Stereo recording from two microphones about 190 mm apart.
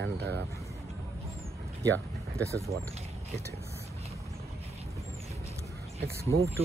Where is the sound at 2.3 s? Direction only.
15° right (ahead or behind).